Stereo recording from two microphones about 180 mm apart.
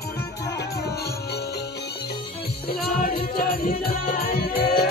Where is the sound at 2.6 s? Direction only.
60° left (ahead or behind).